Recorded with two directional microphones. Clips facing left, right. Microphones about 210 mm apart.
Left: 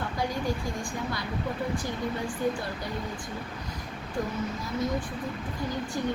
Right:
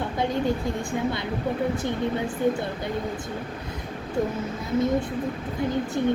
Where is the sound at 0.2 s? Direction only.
25° right (ahead or behind).